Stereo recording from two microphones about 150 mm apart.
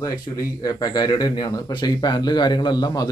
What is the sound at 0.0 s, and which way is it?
Speech, 25° left (ahead or behind).